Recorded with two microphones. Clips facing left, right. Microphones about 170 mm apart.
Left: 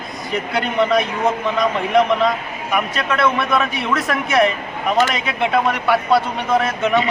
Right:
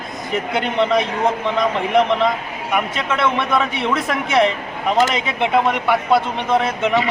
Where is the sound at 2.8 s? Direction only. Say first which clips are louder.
Left 1 dB; 20° right (ahead or behind).